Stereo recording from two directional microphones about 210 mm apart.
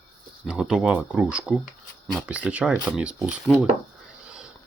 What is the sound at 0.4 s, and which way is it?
Speech, 5° right (ahead or behind).